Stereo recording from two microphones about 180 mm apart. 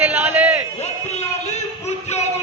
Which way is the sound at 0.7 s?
35° left (ahead or behind).